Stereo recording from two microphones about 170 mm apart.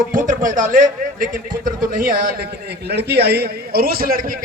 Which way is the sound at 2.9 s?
75° right (ahead or behind).